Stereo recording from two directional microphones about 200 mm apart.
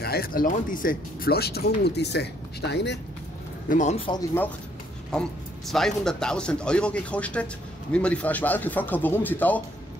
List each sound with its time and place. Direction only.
0.0 s speech: 50° left (ahead or behind)
3.6 s speech: 40° left (ahead or behind)
5.1 s speech: 5° left (ahead or behind)